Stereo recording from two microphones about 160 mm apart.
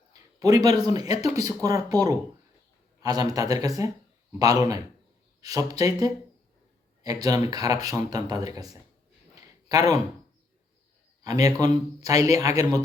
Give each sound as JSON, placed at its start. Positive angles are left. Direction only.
{"t": 0.1, "sound": "speech", "side_deg": -20}
{"t": 9.3, "sound": "a sound", "side_deg": -25}
{"t": 11.2, "sound": "speech", "side_deg": -20}